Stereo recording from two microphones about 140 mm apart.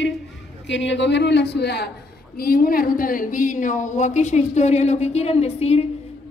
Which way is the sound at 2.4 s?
90° left.